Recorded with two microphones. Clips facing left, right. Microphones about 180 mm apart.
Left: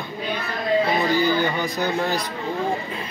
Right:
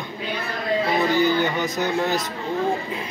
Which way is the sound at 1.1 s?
20° right (ahead or behind).